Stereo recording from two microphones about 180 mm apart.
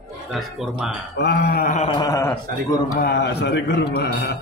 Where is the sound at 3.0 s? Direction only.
70° left (ahead or behind).